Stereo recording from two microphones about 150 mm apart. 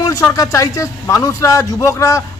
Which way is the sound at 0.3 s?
20° left (ahead or behind).